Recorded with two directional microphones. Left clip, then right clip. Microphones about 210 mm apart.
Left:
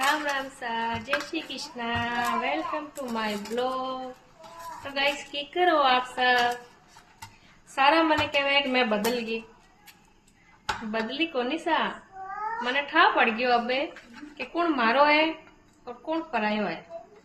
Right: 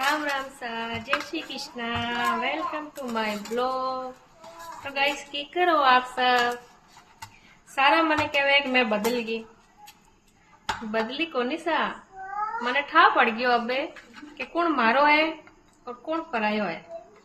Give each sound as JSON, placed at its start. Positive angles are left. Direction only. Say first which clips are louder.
{"t": 0.1, "sound": "a woman's voice", "louder": "even", "side_deg": -15}
{"t": 7.8, "sound": "a woman's voice", "louder": "right 1 dB", "side_deg": -10}
{"t": 11.1, "sound": "a woman's voice", "louder": "even", "side_deg": -15}